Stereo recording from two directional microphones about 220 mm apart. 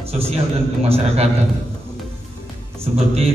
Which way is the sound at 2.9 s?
30° right (ahead or behind).